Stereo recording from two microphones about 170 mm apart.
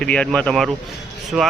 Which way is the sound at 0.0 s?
5° left (ahead or behind).